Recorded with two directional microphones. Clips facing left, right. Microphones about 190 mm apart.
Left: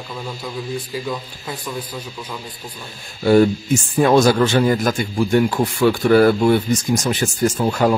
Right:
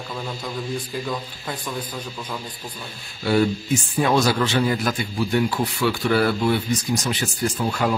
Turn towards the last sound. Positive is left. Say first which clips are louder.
# left 6 dB
turn(degrees=45)  # may be behind; listen again after turning